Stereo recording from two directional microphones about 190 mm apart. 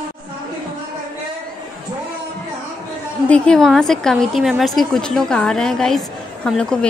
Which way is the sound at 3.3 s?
5° left (ahead or behind).